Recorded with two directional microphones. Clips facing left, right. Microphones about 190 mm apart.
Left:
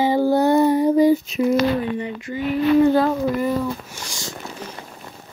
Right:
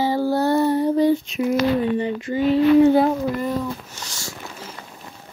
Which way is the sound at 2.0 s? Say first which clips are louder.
Right 4 dB; 30° right (ahead or behind).